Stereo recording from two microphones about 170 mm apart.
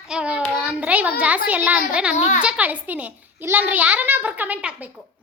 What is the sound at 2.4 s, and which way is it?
A woman's voice, 10° right (ahead or behind).